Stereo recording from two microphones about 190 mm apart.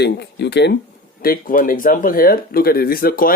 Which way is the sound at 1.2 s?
50° left (ahead or behind).